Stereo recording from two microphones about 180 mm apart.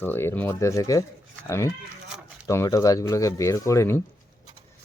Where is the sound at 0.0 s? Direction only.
10° left (ahead or behind).